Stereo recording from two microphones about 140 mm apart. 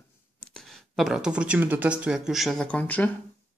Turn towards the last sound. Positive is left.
turn(degrees=10)  # may be behind; listen again after turning